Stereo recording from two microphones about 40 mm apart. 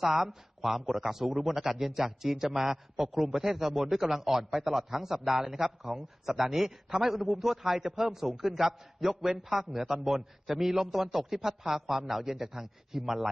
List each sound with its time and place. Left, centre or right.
0.0 s a man's voice: centre